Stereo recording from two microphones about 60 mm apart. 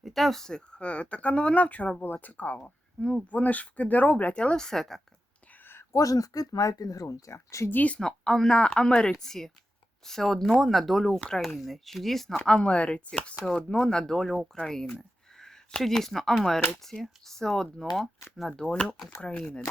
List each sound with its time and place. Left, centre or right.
0.0 s speech: centre; by 2.6 s left
2.6 s speech: centre
5.9 s speech: left
7.7 s speech: left
7.9 s a woman's voice: centre
12.5 s a woman's voice: centre
18.5 s a woman's voice: centre